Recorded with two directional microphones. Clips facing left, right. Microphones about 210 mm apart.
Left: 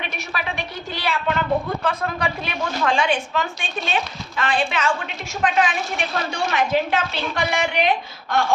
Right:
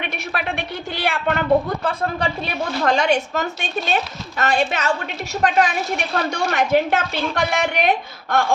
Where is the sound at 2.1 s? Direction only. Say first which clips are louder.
Right 2 dB; 30° right (ahead or behind).